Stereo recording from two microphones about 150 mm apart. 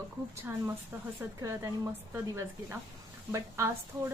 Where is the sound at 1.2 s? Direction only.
15° right (ahead or behind).